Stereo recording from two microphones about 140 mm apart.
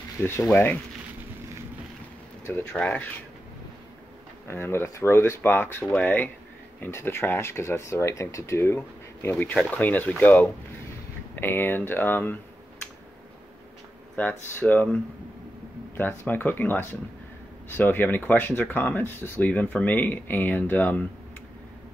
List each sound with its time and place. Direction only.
0.2 s speech: 15° left (ahead or behind)
2.4 s speech: 15° left (ahead or behind)
4.5 s speech: 15° left (ahead or behind)
14.1 s speech: 10° left (ahead or behind)
16.0 s speech: 15° left (ahead or behind)